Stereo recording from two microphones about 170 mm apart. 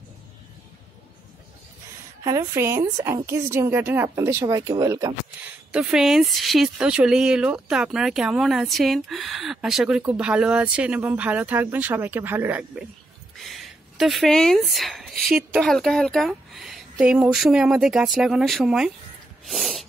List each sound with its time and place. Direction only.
2.2 s a woman's voice: 20° right (ahead or behind)
5.4 s speech: 5° right (ahead or behind)
13.4 s a sound: centre (ahead or behind)
15.6 s speech: centre (ahead or behind)
19.4 s sneeze: centre (ahead or behind)